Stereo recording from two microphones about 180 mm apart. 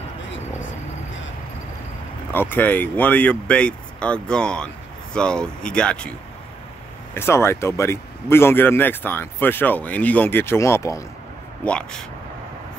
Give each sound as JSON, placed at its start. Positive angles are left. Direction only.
{"t": 2.3, "sound": "speech", "side_deg": 10}
{"t": 7.2, "sound": "speech", "side_deg": 15}
{"t": 11.6, "sound": "speech", "side_deg": 5}